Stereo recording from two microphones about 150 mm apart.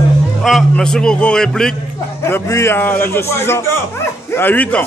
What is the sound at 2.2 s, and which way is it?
A man's voice, 20° left (ahead or behind).